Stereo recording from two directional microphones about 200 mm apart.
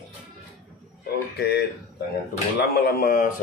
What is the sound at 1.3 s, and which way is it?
A man's voice, 55° left (ahead or behind).